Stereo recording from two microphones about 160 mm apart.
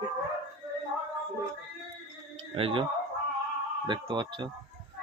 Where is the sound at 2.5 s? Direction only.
35° right (ahead or behind).